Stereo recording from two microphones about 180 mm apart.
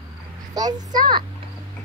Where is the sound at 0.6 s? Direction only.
20° right (ahead or behind).